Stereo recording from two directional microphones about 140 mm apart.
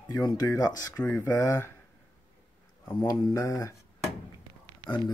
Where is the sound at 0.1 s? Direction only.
30° left (ahead or behind).